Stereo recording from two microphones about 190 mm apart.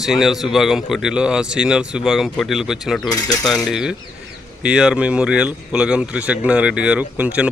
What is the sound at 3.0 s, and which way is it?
Coin, 20° left (ahead or behind).